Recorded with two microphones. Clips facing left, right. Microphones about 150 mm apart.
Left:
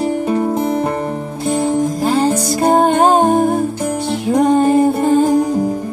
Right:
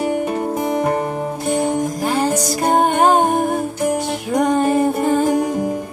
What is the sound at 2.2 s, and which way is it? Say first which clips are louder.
Music: left 4 dB; 30° left (ahead or behind).